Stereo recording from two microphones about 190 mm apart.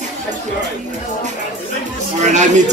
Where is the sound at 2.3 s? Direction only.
40° right (ahead or behind).